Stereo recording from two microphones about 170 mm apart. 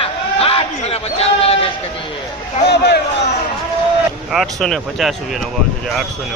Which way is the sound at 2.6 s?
70° left (ahead or behind).